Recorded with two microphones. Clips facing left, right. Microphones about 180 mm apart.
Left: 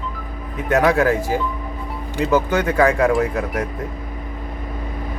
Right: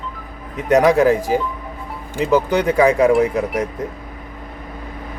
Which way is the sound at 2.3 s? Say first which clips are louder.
Right 2 dB; 15° right (ahead or behind).